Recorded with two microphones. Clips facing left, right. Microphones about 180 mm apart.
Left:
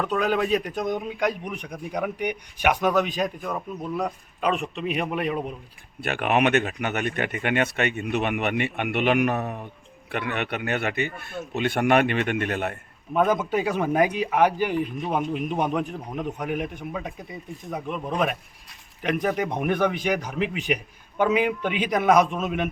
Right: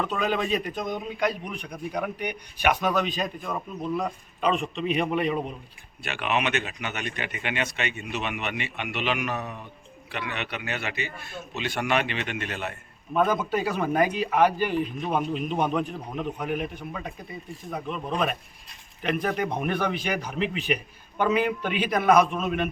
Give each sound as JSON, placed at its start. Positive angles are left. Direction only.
{"t": 0.2, "sound": "a man's voice", "side_deg": 5}
{"t": 6.0, "sound": "a man's voice", "side_deg": 50}
{"t": 13.1, "sound": "a man's voice", "side_deg": 20}